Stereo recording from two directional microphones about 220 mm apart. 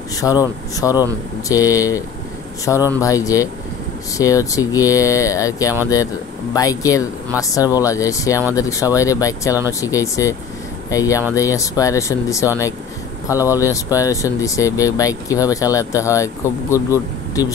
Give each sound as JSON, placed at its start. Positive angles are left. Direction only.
{"t": 0.1, "sound": "speech", "side_deg": 15}